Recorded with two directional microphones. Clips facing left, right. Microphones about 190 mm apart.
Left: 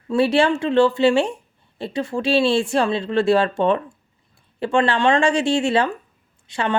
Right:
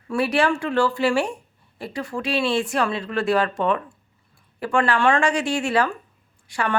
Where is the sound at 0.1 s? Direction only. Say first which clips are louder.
Left 4 dB; 25° left (ahead or behind).